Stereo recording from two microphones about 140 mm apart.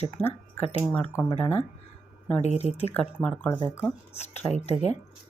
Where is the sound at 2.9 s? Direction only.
10° left (ahead or behind).